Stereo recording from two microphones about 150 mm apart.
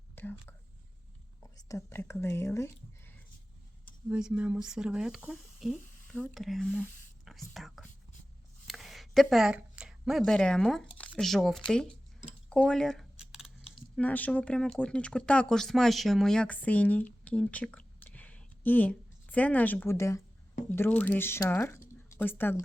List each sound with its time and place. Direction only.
0.2 s speech: 15° left (ahead or behind)
1.5 s speech: 20° left (ahead or behind)
4.1 s speech: 5° right (ahead or behind)
7.3 s whispering: centre (ahead or behind)
8.6 s a sound: centre (ahead or behind)
11.2 s speech: centre (ahead or behind)
12.5 s a sound: 5° left (ahead or behind)
14.0 s speech: 10° left (ahead or behind)